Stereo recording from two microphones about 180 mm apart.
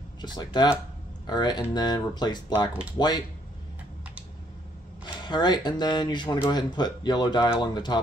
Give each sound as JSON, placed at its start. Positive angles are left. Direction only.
{"t": 0.2, "sound": "speech", "side_deg": 25}
{"t": 5.0, "sound": "speech", "side_deg": 25}